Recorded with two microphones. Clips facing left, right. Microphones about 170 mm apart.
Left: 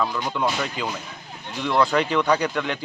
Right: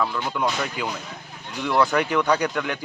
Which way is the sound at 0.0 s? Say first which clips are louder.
Even; 15° left (ahead or behind).